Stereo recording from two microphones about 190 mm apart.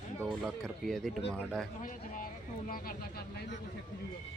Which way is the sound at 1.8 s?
45° left (ahead or behind).